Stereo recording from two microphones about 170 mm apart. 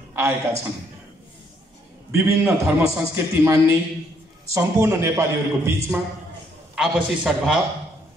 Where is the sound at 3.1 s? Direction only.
15° right (ahead or behind); by 7.6 s centre (ahead or behind).